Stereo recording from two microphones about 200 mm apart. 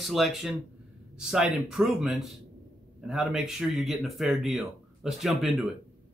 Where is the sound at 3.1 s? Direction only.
Centre (ahead or behind).